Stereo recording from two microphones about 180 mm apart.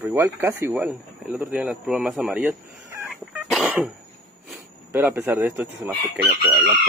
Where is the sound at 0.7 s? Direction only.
Centre (ahead or behind).